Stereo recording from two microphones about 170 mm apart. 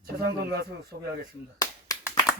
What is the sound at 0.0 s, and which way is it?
Speech, 65° right (ahead or behind).